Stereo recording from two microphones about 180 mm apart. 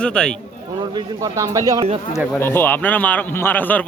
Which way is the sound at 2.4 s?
10° left (ahead or behind).